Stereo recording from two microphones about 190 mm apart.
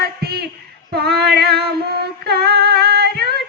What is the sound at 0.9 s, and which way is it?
Female singing, 60° right (ahead or behind).